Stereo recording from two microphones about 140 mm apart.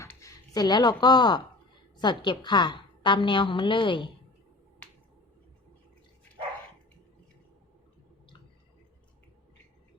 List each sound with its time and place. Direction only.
0.0 s a woman's voice: 20° left (ahead or behind); by 4.1 s 35° left (ahead or behind)